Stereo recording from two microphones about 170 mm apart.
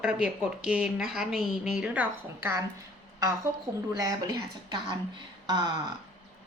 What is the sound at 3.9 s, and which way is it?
Speech, 20° right (ahead or behind).